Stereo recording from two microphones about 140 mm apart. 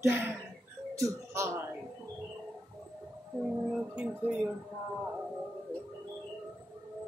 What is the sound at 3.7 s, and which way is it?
Speech, 10° right (ahead or behind).